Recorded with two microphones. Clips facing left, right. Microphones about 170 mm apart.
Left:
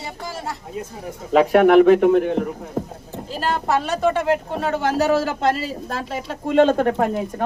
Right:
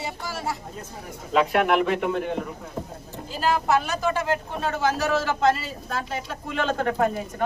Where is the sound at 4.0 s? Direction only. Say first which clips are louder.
Left 6 dB; 65° left (ahead or behind).